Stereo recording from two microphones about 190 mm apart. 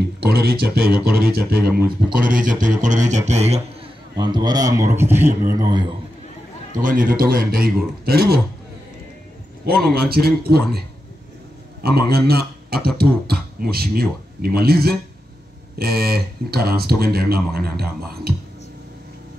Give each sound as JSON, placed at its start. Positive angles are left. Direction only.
{"t": 0.2, "sound": "speech", "side_deg": -55}
{"t": 4.2, "sound": "a man's voice", "side_deg": -20}
{"t": 6.8, "sound": "speech", "side_deg": -45}
{"t": 9.9, "sound": "speech", "side_deg": -55}
{"t": 11.8, "sound": "speech", "side_deg": -55}